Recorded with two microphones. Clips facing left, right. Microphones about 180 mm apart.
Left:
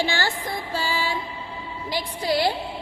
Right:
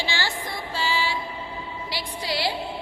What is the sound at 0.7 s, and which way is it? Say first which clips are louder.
Music: right 1 dB; 50° left (ahead or behind).